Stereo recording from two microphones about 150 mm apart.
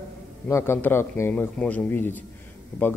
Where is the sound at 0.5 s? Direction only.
15° left (ahead or behind).